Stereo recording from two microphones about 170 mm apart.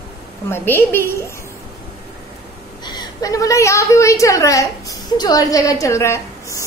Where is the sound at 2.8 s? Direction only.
25° left (ahead or behind).